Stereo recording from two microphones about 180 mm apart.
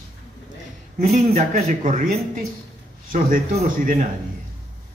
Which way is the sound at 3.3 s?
50° right (ahead or behind).